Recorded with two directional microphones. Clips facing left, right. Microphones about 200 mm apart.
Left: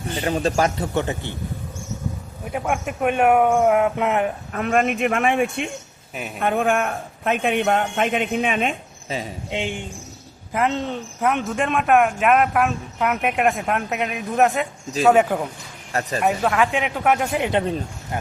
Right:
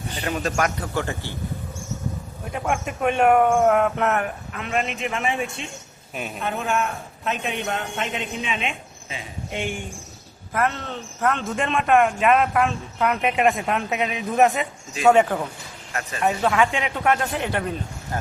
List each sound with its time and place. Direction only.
0.2 s a man's voice: 30° left (ahead or behind)
2.4 s speech: 5° left (ahead or behind)
4.5 s a man's voice: 45° left (ahead or behind)
9.5 s speech: 20° left (ahead or behind)
11.4 s speech: centre (ahead or behind)
15.9 s speech: 35° left (ahead or behind)
16.2 s speech: centre (ahead or behind)